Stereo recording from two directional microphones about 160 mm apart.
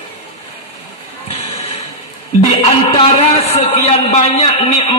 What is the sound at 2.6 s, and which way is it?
A man's voice, 40° left (ahead or behind).